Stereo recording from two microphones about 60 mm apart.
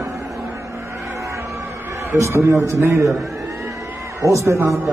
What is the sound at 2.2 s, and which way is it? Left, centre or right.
Speech, right.